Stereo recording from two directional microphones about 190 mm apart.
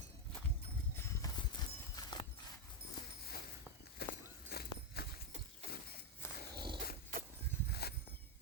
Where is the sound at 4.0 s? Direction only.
55° left (ahead or behind).